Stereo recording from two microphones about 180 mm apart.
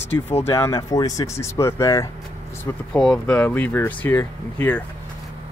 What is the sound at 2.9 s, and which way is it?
Speech, 5° left (ahead or behind).